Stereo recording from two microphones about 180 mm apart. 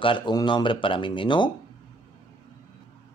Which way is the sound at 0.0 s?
25° left (ahead or behind).